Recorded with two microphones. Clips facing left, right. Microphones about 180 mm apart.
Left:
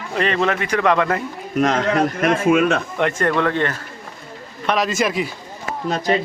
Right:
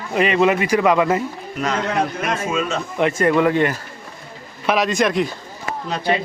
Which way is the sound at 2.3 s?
60° left (ahead or behind).